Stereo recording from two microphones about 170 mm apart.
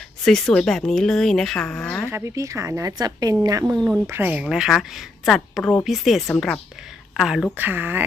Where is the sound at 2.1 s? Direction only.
15° right (ahead or behind).